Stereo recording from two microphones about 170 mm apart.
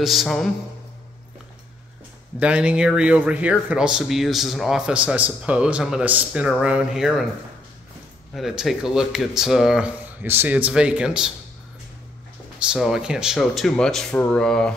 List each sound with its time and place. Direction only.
0.0 s speech: centre (ahead or behind)
2.3 s speech: 5° right (ahead or behind)
8.4 s speech: centre (ahead or behind)
12.5 s speech: 5° right (ahead or behind)